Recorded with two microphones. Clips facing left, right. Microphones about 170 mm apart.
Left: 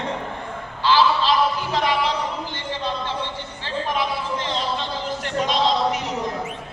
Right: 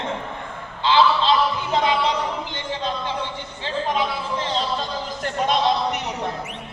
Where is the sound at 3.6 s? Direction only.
25° right (ahead or behind).